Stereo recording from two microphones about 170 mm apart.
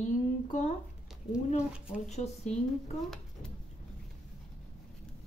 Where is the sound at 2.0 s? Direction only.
40° left (ahead or behind).